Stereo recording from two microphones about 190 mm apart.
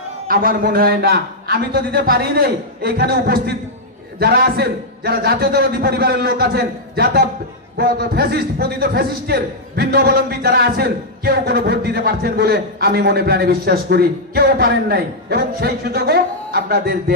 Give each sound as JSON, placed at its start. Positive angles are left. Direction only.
{"t": 0.3, "sound": "a man's voice", "side_deg": -45}